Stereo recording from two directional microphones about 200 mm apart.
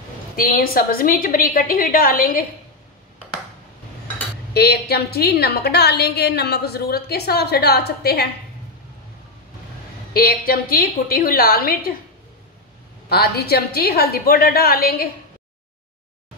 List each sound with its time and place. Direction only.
0.4 s a woman's voice: 45° left (ahead or behind)
4.6 s a woman's voice: 50° left (ahead or behind)
10.1 s a woman's voice: 45° left (ahead or behind)
13.1 s a woman's voice: 55° left (ahead or behind)